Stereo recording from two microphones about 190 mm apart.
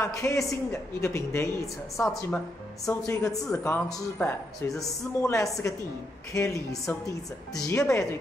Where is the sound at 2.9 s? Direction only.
15° left (ahead or behind).